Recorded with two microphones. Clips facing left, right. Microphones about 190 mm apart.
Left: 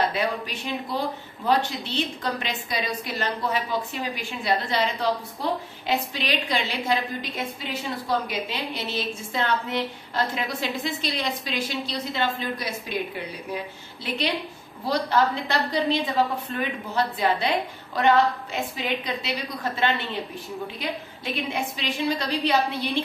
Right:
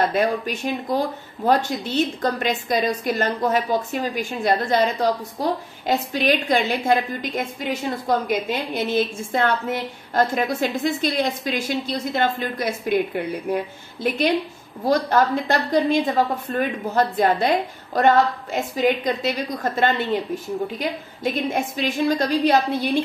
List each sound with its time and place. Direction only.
0.1 s a woman's voice: 45° right (ahead or behind)
21.2 s a woman's voice: 45° right (ahead or behind)